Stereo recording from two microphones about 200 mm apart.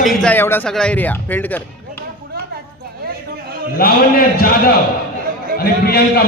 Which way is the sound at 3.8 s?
45° left (ahead or behind).